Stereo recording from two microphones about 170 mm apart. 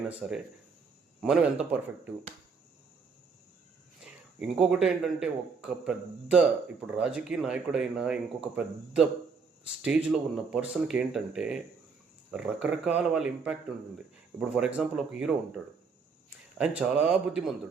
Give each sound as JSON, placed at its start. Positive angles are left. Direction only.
{"t": 0.1, "sound": "speech", "side_deg": -5}
{"t": 4.0, "sound": "speech", "side_deg": -5}
{"t": 16.6, "sound": "speech", "side_deg": -5}